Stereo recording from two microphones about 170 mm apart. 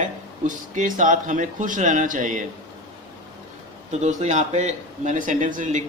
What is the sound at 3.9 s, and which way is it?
Speech, 45° right (ahead or behind).